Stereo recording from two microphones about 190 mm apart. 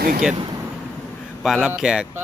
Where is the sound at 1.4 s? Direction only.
5° right (ahead or behind).